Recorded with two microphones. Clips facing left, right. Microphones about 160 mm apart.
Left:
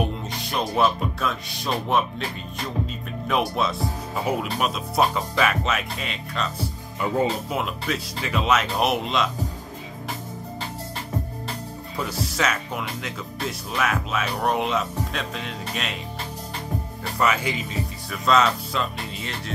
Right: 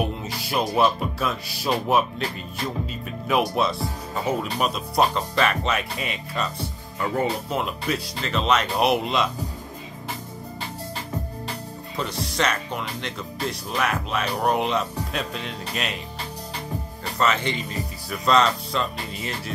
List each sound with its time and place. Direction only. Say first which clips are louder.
0.0 s music: even; 5° right (ahead or behind)
3.3 s speech: right 2 dB; centre (ahead or behind)
7.0 s speech: left 1 dB; 15° left (ahead or behind)
7.5 s speech: right 1 dB; centre (ahead or behind)
12.0 s speech: even; 5° left (ahead or behind)
17.2 s speech: even; 10° left (ahead or behind)